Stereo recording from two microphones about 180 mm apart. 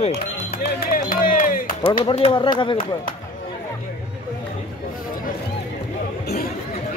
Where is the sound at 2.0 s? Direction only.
30° left (ahead or behind).